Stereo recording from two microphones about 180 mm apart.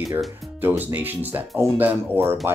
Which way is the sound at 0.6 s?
10° right (ahead or behind).